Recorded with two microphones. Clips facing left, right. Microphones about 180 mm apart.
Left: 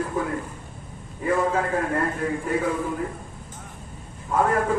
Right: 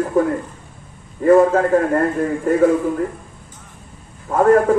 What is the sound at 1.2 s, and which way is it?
A man's voice, 50° right (ahead or behind).